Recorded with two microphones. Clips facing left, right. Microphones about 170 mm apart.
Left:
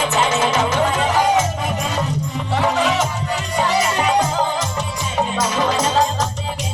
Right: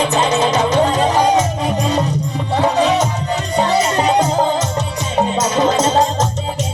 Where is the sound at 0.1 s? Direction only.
20° right (ahead or behind).